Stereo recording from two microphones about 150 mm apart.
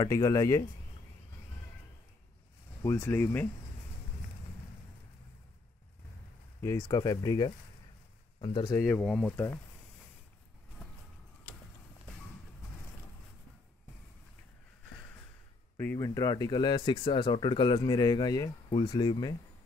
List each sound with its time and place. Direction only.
0.0 s speech: 25° left (ahead or behind)
2.8 s speech: 15° left (ahead or behind)
6.6 s speech: 20° left (ahead or behind)
8.7 s speech: 15° left (ahead or behind)
9.0 s speech: 5° left (ahead or behind)
15.8 s speech: 15° left (ahead or behind)